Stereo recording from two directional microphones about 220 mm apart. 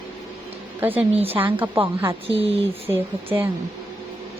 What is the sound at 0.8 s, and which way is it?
Speech, 10° right (ahead or behind).